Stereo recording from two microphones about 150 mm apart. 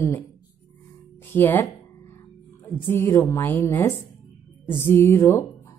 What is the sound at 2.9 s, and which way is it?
Speech, 15° left (ahead or behind).